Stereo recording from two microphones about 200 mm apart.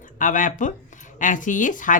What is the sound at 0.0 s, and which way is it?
Speech, 40° left (ahead or behind).